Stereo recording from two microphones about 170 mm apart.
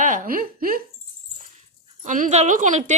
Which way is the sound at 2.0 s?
45° right (ahead or behind).